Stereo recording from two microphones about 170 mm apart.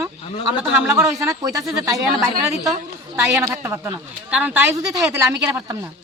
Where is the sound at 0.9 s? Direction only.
20° right (ahead or behind).